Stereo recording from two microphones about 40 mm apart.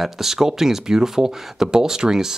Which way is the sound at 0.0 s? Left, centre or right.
Centre.